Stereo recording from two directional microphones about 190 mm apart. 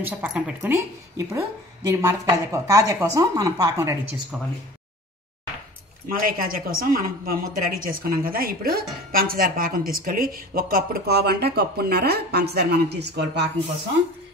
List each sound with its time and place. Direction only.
0.0 s a woman's voice: 10° right (ahead or behind)
6.2 s a woman's voice: 50° right (ahead or behind); by 13.5 s 65° right (ahead or behind)